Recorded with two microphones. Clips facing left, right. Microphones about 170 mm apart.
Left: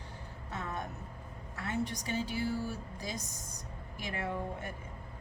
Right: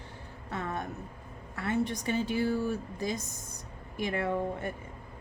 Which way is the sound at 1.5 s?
60° right (ahead or behind).